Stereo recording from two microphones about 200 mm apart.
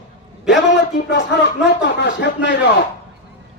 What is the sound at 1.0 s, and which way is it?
Speech, 60° left (ahead or behind).